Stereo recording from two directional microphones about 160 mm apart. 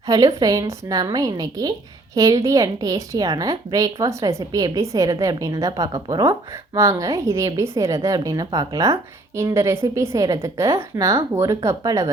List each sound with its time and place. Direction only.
0.1 s a woman's voice: 25° right (ahead or behind)